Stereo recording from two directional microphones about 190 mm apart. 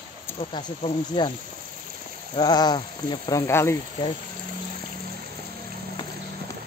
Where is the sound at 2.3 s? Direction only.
20° left (ahead or behind).